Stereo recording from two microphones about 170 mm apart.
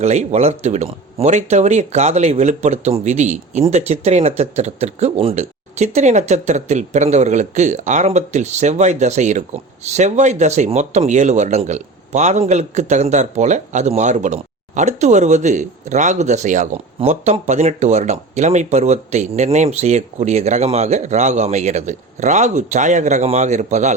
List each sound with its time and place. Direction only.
0.0 s speech: 40° right (ahead or behind)